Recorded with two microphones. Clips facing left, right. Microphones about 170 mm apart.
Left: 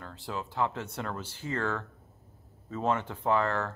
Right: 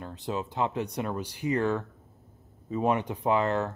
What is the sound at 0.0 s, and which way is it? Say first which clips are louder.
Speech: right 5 dB; 20° right (ahead or behind).